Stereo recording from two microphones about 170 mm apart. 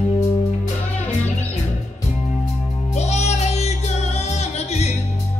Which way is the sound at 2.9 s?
40° left (ahead or behind).